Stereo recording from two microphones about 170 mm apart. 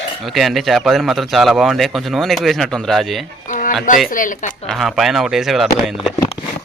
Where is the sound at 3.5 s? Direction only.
50° left (ahead or behind).